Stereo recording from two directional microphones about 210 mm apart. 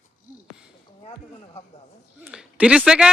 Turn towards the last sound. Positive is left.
turn(degrees=-5)  # may be behind; listen again after turning